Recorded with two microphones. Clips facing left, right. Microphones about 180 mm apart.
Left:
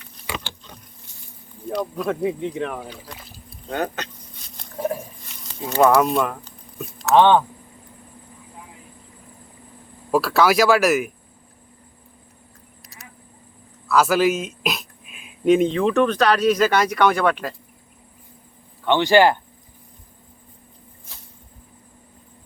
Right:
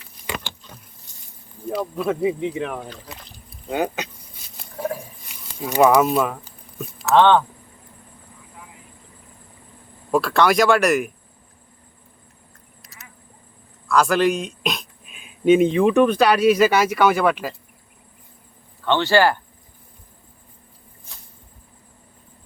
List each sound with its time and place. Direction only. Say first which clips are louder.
1.7 s speech: right 1 dB; 5° right (ahead or behind)
2.8 s speech: even; 10° left (ahead or behind)
3.2 s rowboat: left 1 dB; 5° left (ahead or behind)
3.7 s a sound: right 2 dB; 10° right (ahead or behind)
6.0 s speech: right 1 dB; 5° right (ahead or behind)
7.1 s speech: even; 15° left (ahead or behind)
10.1 s speech: even; 5° left (ahead or behind)
13.8 s speech: even; 5° left (ahead or behind)
18.9 s speech: left 2 dB; 15° left (ahead or behind)